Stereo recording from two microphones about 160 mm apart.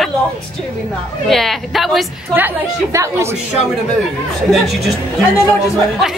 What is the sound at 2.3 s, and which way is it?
Speech, 15° right (ahead or behind).